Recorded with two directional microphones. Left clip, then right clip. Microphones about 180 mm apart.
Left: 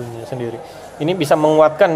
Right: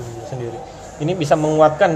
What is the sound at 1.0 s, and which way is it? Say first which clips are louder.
Speech: left 3 dB; 25° left (ahead or behind).